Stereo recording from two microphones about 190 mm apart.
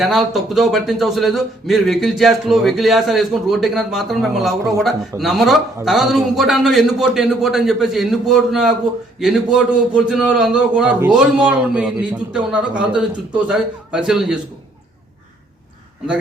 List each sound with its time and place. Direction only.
0.0 s a man's voice: centre (ahead or behind)